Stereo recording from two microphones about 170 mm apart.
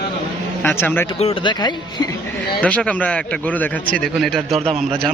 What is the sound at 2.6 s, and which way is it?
A man's voice, 5° left (ahead or behind).